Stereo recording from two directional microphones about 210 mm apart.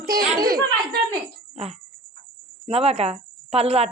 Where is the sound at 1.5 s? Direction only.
30° right (ahead or behind).